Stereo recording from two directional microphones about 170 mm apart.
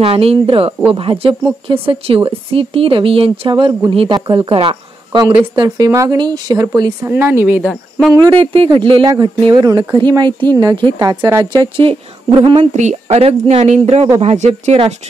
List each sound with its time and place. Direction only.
0.0 s a woman's voice: 35° right (ahead or behind); by 7.6 s 10° right (ahead or behind)
7.6 s speech: centre (ahead or behind)
8.1 s speech: 25° right (ahead or behind)
11.4 s speech: 25° right (ahead or behind)
12.7 s a woman's voice: 40° right (ahead or behind)